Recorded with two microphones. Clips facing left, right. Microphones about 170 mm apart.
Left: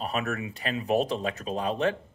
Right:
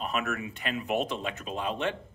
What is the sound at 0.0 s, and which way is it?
Speech, 35° left (ahead or behind).